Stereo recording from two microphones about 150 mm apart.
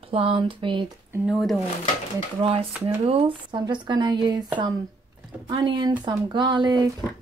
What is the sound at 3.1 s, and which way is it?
Speech, 40° right (ahead or behind).